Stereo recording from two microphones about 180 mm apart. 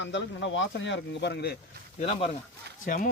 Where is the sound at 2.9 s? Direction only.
50° left (ahead or behind).